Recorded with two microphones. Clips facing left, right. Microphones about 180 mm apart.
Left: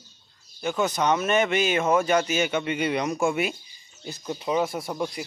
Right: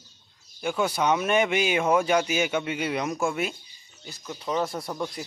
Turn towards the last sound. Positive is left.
turn(degrees=10)  # may be behind; listen again after turning